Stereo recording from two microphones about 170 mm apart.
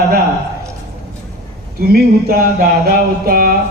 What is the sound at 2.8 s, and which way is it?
Speech, 60° right (ahead or behind).